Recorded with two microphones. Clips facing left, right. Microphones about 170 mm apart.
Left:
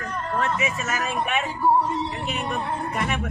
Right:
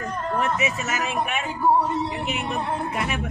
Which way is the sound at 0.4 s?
20° right (ahead or behind).